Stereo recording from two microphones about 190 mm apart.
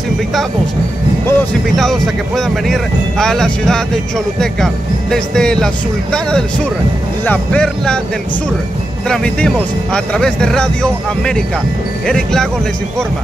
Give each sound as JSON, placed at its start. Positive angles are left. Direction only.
{"t": 1.2, "sound": "speech", "side_deg": 5}
{"t": 7.2, "sound": "speech", "side_deg": 5}
{"t": 9.1, "sound": "speech", "side_deg": 5}